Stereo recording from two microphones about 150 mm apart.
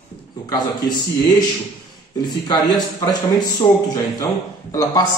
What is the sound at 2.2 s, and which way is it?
Speech, 30° left (ahead or behind).